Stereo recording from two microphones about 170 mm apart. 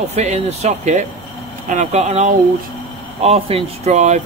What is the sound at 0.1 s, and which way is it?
Speech, 40° right (ahead or behind).